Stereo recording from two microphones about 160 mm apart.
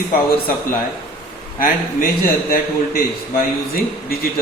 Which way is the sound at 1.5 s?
60° left (ahead or behind).